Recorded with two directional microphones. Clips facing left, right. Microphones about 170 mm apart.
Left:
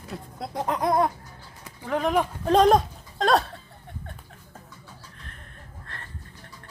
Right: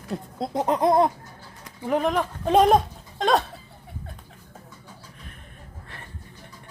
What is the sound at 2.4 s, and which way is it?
Speech, 5° right (ahead or behind).